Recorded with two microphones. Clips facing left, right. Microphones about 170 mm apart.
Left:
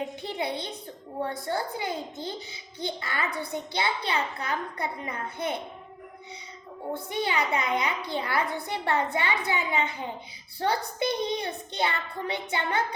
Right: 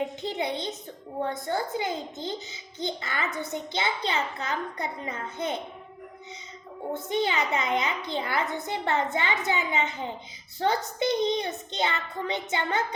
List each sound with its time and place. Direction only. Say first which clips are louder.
0.0 s a sound: right 2 dB; 20° right (ahead or behind)
1.3 s a child's voice: right 2 dB; 20° right (ahead or behind)
6.9 s a child's voice: right 2 dB; 20° right (ahead or behind)